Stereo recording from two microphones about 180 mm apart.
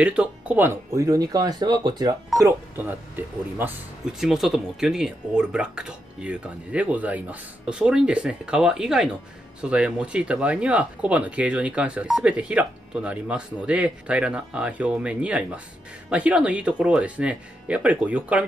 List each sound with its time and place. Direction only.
0.0 s speech: 5° right (ahead or behind)